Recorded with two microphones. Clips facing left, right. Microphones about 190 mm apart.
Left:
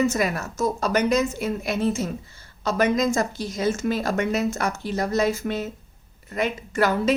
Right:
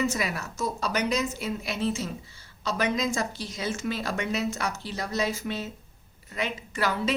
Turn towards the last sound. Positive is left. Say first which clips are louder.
# left 7 dB
turn(degrees=50)  # may be behind; listen again after turning